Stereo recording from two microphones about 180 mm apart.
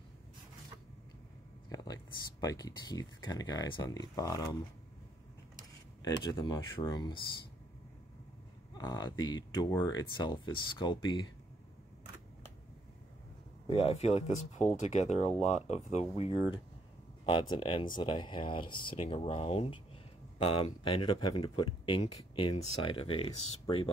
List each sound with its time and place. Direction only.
1.7 s a sound: 20° left (ahead or behind)
2.4 s speech: 20° left (ahead or behind)
6.3 s speech: 25° left (ahead or behind)
8.7 s speech: 20° left (ahead or behind)
13.7 s speech: 30° left (ahead or behind)